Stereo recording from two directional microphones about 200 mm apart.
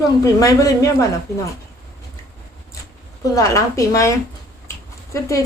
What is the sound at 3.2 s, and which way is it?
Speech, 15° left (ahead or behind).